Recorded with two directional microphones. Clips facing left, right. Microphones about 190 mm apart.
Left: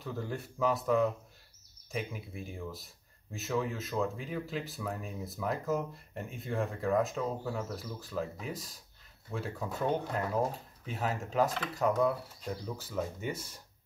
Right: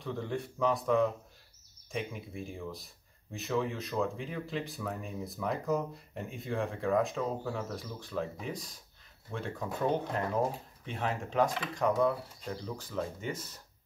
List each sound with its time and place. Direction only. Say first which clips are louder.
0.0 s speech: right 2 dB; centre (ahead or behind)